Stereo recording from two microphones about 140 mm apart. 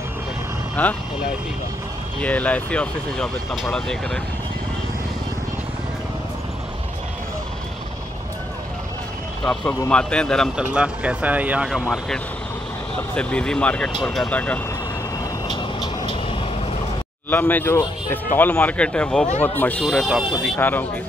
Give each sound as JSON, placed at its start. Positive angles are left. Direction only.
{"t": 0.8, "sound": "speech", "side_deg": 10}
{"t": 2.2, "sound": "speech", "side_deg": 10}
{"t": 9.4, "sound": "speech", "side_deg": 5}
{"t": 10.5, "sound": "speech", "side_deg": -5}
{"t": 13.1, "sound": "speech", "side_deg": 10}
{"t": 15.4, "sound": "vehicle", "side_deg": 30}
{"t": 17.3, "sound": "speech", "side_deg": 15}
{"t": 19.8, "sound": "speech", "side_deg": 0}
{"t": 20.5, "sound": "speech", "side_deg": 15}